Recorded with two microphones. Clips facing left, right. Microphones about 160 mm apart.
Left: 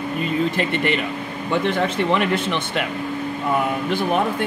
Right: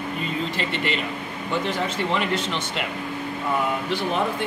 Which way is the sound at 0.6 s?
50° left (ahead or behind).